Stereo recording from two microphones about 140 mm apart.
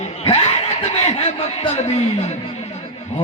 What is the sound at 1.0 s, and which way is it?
A man's voice, 55° left (ahead or behind).